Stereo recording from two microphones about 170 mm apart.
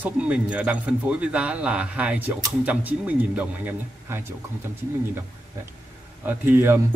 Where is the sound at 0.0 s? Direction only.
5° right (ahead or behind).